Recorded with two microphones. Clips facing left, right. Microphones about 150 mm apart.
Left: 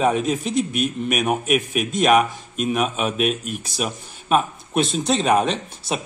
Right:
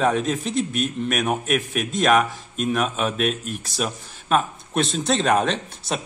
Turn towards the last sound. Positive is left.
turn(degrees=5)  # may be behind; listen again after turning